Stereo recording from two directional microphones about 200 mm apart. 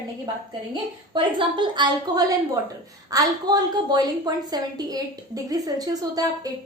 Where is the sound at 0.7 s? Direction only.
25° right (ahead or behind).